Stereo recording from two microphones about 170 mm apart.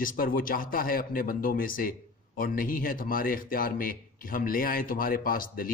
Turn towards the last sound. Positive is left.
turn(degrees=55)  # may be behind; listen again after turning